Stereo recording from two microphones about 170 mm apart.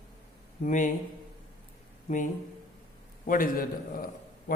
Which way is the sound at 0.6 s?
50° left (ahead or behind).